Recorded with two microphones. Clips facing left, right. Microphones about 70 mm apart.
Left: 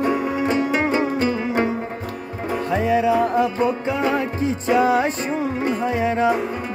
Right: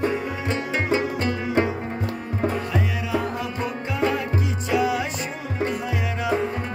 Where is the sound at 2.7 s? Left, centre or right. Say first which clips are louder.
Left 8 dB; left.